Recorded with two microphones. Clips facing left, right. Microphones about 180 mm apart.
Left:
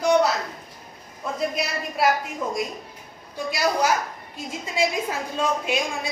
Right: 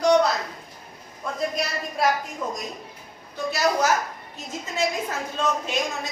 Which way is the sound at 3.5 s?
15° left (ahead or behind).